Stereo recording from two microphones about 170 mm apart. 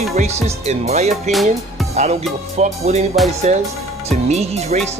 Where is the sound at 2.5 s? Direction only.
40° right (ahead or behind).